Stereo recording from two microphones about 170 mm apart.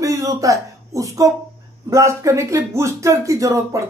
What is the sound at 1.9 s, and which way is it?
Speech, 15° right (ahead or behind).